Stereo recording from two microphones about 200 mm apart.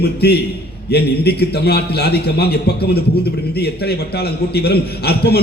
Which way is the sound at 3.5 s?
55° left (ahead or behind).